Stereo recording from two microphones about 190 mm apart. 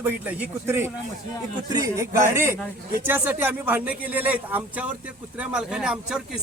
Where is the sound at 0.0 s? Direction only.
10° right (ahead or behind).